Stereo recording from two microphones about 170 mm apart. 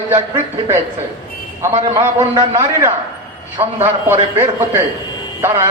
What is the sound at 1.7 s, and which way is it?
Speech, 40° right (ahead or behind).